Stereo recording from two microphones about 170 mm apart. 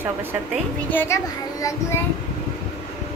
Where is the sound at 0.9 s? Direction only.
15° left (ahead or behind).